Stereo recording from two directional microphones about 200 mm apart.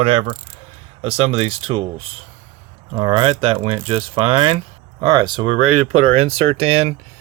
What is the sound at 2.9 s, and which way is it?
Speech, 25° right (ahead or behind).